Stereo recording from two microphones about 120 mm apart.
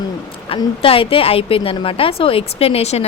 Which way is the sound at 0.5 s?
50° left (ahead or behind).